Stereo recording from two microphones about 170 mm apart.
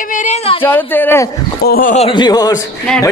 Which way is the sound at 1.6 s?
60° left (ahead or behind).